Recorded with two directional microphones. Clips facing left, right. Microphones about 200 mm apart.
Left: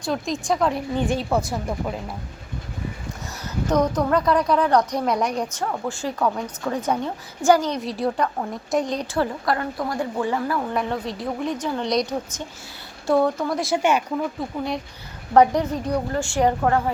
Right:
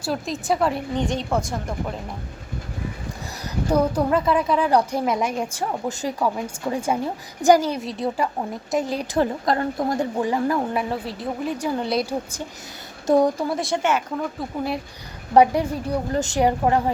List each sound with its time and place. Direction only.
0.0 s speech: 5° right (ahead or behind)
0.9 s a woman's voice: 5° left (ahead or behind)
3.7 s a woman's voice: 10° right (ahead or behind)
9.1 s a woman's voice: 20° right (ahead or behind)
10.8 s speech: 5° right (ahead or behind)
13.1 s a woman's voice: 15° right (ahead or behind)
13.5 s a woman's voice: centre (ahead or behind); by 16.9 s 15° right (ahead or behind)